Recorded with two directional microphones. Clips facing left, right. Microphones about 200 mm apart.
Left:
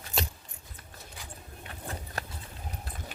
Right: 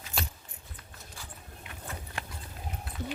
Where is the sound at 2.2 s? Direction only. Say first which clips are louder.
Left 2 dB; 40° left (ahead or behind).